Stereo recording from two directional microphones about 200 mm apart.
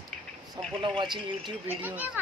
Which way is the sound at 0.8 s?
25° right (ahead or behind).